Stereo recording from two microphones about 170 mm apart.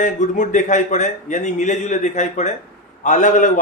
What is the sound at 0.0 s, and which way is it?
A man's voice, 45° left (ahead or behind).